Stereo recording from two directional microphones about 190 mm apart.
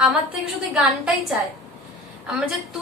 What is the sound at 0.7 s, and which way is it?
Speech, centre (ahead or behind).